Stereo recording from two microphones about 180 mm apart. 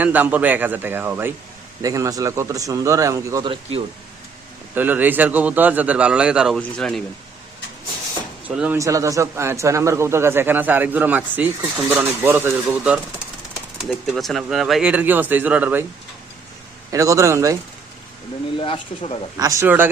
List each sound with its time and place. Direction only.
0.0 s speech: 10° right (ahead or behind)
4.7 s speech: 10° right (ahead or behind)
8.4 s speech: 5° right (ahead or behind)
13.8 s speech: centre (ahead or behind)
16.9 s speech: 15° right (ahead or behind)
18.5 s speech: 30° left (ahead or behind)
19.4 s speech: 15° right (ahead or behind)